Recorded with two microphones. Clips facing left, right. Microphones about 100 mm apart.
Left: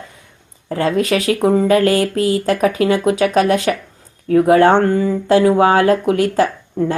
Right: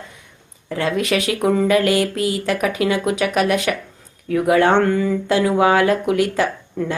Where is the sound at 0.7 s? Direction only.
35° left (ahead or behind).